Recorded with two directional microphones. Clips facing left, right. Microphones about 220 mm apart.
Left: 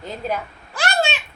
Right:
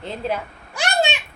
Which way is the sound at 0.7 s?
15° right (ahead or behind).